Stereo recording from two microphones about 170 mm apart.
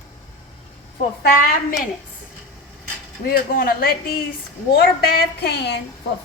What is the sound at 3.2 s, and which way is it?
A woman's voice, 60° left (ahead or behind).